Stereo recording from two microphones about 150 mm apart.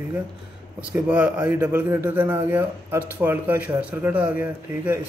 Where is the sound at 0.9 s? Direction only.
10° right (ahead or behind).